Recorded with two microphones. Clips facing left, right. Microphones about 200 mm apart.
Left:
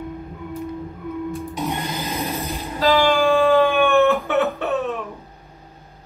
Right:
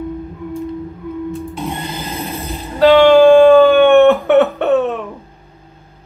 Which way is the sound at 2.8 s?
65° right (ahead or behind).